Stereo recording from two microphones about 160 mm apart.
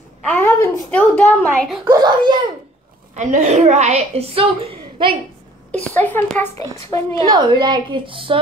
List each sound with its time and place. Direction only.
0.2 s a woman's voice: 10° left (ahead or behind)
1.9 s a woman's voice: 25° right (ahead or behind)
3.2 s a woman's voice: 50° right (ahead or behind); by 5.1 s 35° right (ahead or behind)
5.7 s a woman's voice: 10° left (ahead or behind)
7.2 s a woman's voice: 25° right (ahead or behind)